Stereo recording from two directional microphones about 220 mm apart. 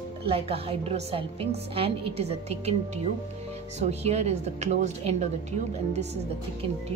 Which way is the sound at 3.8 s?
30° right (ahead or behind).